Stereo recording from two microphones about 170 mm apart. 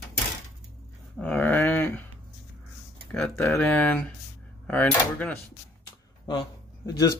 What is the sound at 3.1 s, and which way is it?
Speech, 10° left (ahead or behind).